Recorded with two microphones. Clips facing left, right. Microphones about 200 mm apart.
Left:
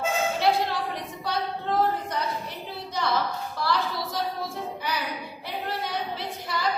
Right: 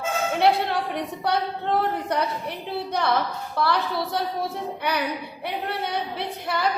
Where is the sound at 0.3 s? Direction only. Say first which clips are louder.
Right 7 dB; 60° right (ahead or behind).